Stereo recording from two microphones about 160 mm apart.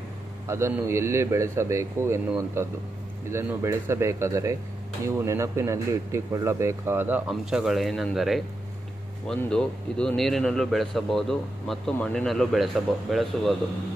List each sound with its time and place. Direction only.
0.5 s a man's voice: 15° right (ahead or behind); by 13.6 s centre (ahead or behind)